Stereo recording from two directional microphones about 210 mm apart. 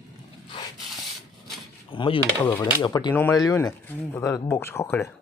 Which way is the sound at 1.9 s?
25° left (ahead or behind).